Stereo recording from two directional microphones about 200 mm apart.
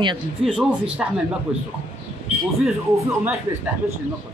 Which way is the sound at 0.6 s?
5° right (ahead or behind).